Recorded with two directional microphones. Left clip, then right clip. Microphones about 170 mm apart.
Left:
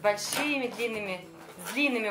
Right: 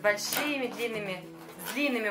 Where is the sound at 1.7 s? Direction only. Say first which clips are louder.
Left 2 dB; 15° left (ahead or behind).